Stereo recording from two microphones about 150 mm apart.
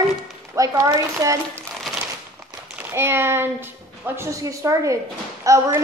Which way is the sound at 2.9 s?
15° right (ahead or behind).